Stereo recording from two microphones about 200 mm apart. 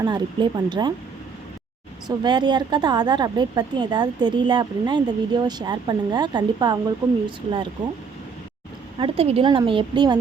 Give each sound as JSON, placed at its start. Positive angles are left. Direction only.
{"t": 0.0, "sound": "a woman's voice", "side_deg": -20}
{"t": 2.0, "sound": "a woman's voice", "side_deg": -20}
{"t": 9.0, "sound": "a woman's voice", "side_deg": -30}